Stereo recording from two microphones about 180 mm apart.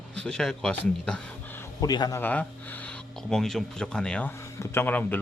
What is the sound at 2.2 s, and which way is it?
Speech, 10° left (ahead or behind).